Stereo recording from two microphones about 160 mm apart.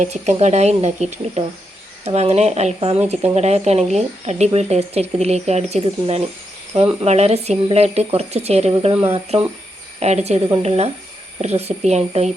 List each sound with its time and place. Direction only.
0.0 s speech: 45° right (ahead or behind)